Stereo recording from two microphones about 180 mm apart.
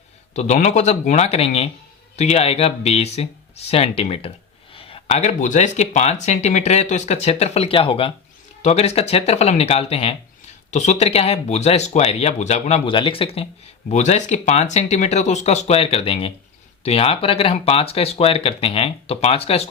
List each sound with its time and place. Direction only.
0.3 s speech: 40° left (ahead or behind)